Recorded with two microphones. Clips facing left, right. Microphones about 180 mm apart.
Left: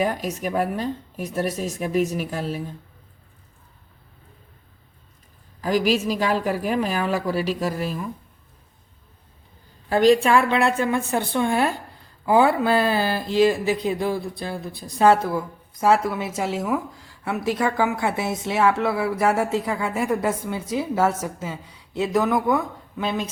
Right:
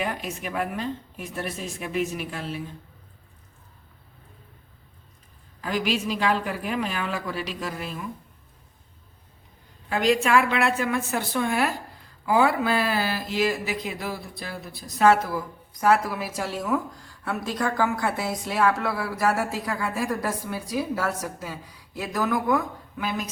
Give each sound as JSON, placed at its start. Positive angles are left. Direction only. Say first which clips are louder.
{"t": 0.0, "sound": "a woman's voice", "louder": "left 6 dB", "side_deg": 40}
{"t": 5.6, "sound": "a woman's voice", "louder": "left 6 dB", "side_deg": 40}
{"t": 9.9, "sound": "a woman's voice", "louder": "left 5 dB", "side_deg": 35}